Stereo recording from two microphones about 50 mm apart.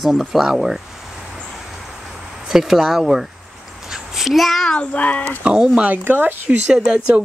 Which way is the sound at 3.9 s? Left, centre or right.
Centre.